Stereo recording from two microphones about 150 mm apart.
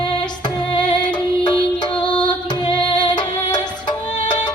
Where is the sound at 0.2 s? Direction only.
30° left (ahead or behind).